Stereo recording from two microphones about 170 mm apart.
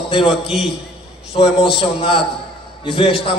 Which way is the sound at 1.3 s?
30° left (ahead or behind).